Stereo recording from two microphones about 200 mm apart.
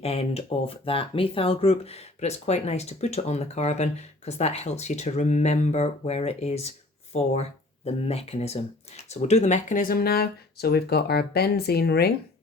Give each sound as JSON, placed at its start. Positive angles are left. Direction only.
{"t": 0.0, "sound": "speech", "side_deg": 30}